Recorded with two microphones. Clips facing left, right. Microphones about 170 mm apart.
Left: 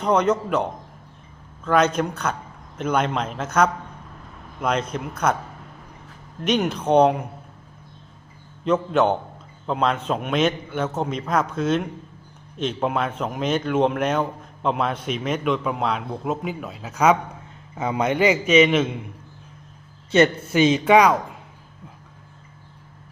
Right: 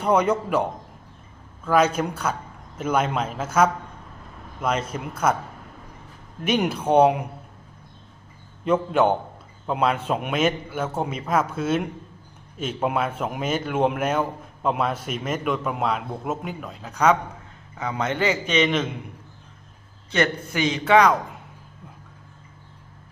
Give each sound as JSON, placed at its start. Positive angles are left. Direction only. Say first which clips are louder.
{"t": 0.0, "sound": "a man's voice", "louder": "left 1 dB", "side_deg": -10}
{"t": 1.6, "sound": "speech", "louder": "left 1 dB", "side_deg": -5}
{"t": 6.4, "sound": "a man's voice", "louder": "left 1 dB", "side_deg": -10}
{"t": 8.6, "sound": "a man's voice", "louder": "even", "side_deg": -10}
{"t": 17.7, "sound": "a man's voice", "louder": "left 4 dB", "side_deg": 20}
{"t": 20.1, "sound": "a man's voice", "louder": "left 6 dB", "side_deg": 20}